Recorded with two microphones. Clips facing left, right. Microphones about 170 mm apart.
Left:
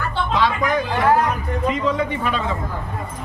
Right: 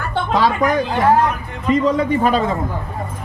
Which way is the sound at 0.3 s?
40° right (ahead or behind).